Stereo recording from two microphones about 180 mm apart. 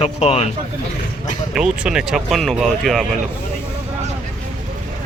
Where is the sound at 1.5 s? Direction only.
5° right (ahead or behind).